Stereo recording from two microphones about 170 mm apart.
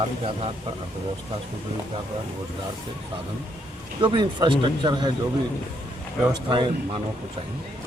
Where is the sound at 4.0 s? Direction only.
25° right (ahead or behind).